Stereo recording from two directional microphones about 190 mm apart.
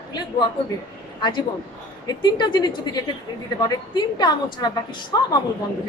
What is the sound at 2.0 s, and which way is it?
A woman's voice, 20° left (ahead or behind).